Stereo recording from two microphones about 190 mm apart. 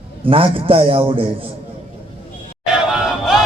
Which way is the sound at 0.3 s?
30° right (ahead or behind).